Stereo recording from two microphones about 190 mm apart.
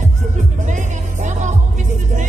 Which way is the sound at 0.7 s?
40° right (ahead or behind).